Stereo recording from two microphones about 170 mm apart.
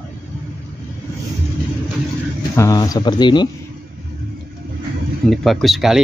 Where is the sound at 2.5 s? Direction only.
20° left (ahead or behind).